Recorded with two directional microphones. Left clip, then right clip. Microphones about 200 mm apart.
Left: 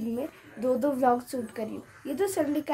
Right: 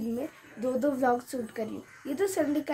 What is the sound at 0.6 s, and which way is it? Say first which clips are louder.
A woman's voice: left 2 dB; centre (ahead or behind).